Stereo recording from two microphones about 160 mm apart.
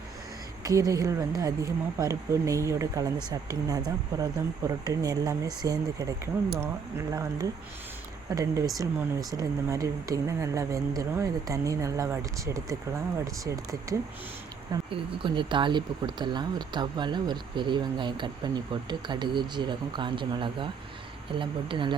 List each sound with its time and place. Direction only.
0.6 s speech: 20° right (ahead or behind)